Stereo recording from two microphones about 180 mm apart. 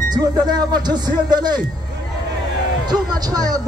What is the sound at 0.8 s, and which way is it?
Speech, 25° right (ahead or behind).